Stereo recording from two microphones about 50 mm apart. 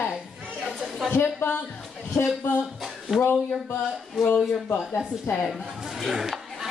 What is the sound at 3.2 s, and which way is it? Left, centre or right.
Speech, left.